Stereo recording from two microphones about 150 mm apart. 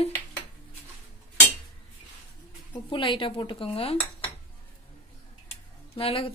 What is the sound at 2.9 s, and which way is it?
A woman's voice, 35° left (ahead or behind).